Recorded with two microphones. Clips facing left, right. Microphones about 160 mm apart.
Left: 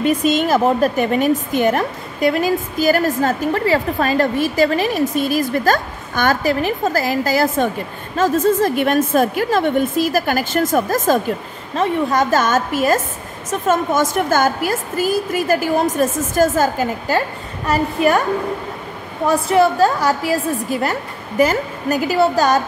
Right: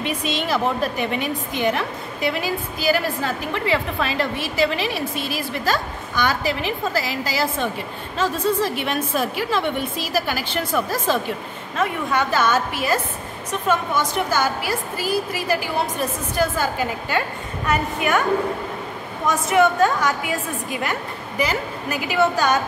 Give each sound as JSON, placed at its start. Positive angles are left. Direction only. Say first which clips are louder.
{"t": 0.0, "sound": "a woman's voice", "louder": "left 9 dB", "side_deg": 45}
{"t": 11.7, "sound": "a woman's voice", "louder": "left 5 dB", "side_deg": 35}
{"t": 19.2, "sound": "a woman's voice", "louder": "left 4 dB", "side_deg": 35}